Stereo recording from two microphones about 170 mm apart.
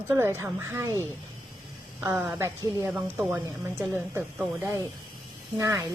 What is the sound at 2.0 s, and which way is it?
Speech, 15° right (ahead or behind).